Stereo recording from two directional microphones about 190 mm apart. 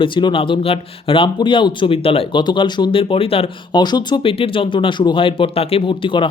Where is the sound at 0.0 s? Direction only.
25° left (ahead or behind).